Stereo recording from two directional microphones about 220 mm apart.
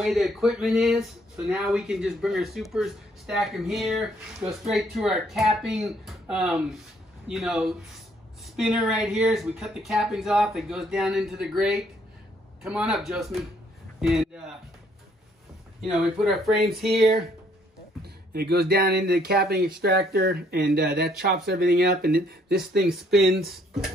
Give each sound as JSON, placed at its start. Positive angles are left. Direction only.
{"t": 0.0, "sound": "speech", "side_deg": 0}
{"t": 15.8, "sound": "speech", "side_deg": 0}
{"t": 18.0, "sound": "speech", "side_deg": -45}
{"t": 22.8, "sound": "speech", "side_deg": 0}